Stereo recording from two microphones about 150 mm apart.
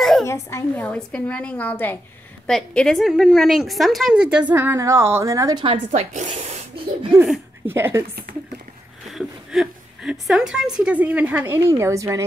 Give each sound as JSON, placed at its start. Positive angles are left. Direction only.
{"t": 0.2, "sound": "a woman's voice", "side_deg": 20}
{"t": 0.8, "sound": "a woman's voice", "side_deg": 5}
{"t": 5.6, "sound": "speech", "side_deg": -40}
{"t": 7.6, "sound": "a woman's voice", "side_deg": -15}
{"t": 9.1, "sound": "a sound", "side_deg": 0}
{"t": 10.8, "sound": "a woman's voice", "side_deg": -10}